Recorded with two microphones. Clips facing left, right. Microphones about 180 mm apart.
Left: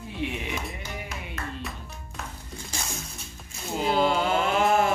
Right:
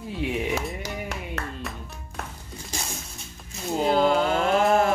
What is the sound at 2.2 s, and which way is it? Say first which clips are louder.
Music: right 3 dB; 60° right (ahead or behind).